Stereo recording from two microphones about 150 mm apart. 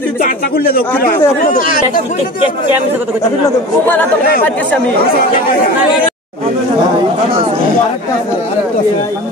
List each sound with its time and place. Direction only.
0.2 s speech: 80° left
3.8 s speech: 10° left (ahead or behind)